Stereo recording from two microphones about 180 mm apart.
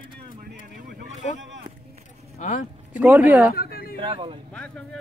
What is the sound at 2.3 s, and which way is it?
Speech, 45° left (ahead or behind).